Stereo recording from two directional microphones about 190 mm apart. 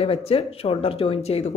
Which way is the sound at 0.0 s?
30° left (ahead or behind).